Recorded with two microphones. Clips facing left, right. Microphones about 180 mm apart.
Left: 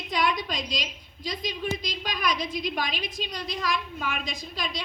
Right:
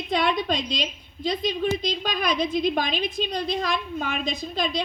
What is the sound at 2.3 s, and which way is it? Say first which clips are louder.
Speech: right 7 dB; 55° right (ahead or behind).